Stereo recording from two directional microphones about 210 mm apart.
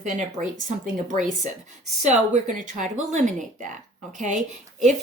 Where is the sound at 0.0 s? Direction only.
35° right (ahead or behind).